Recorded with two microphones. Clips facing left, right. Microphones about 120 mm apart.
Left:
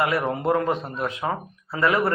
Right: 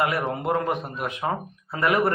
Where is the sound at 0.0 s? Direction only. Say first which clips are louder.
Left 2 dB; 20° right (ahead or behind).